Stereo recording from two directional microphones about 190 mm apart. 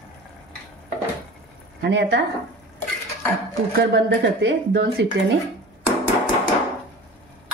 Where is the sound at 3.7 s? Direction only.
60° right (ahead or behind).